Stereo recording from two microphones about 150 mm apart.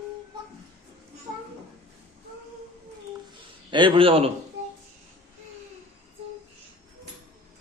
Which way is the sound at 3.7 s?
35° right (ahead or behind).